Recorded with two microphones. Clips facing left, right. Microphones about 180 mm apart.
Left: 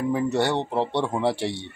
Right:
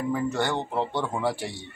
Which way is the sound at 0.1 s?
20° left (ahead or behind).